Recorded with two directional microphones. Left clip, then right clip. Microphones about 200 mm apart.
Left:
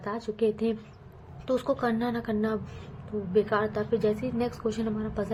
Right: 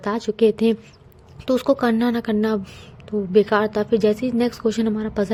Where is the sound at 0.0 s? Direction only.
50° right (ahead or behind).